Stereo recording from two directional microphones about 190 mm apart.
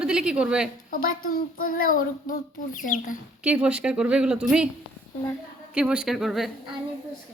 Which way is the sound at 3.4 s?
5° right (ahead or behind).